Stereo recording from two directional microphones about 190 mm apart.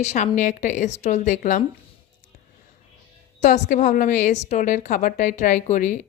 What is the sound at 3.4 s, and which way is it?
A woman's voice, 40° left (ahead or behind).